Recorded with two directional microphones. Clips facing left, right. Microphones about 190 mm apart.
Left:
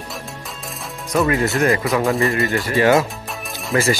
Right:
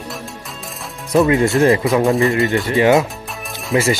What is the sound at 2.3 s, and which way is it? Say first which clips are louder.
Speech: right 3 dB; 20° right (ahead or behind).